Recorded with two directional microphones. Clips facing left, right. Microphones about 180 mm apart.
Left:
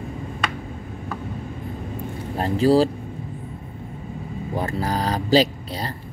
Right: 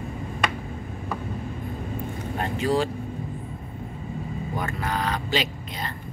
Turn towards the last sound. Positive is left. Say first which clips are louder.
# left 7 dB
turn(degrees=35)  # may be behind; listen again after turning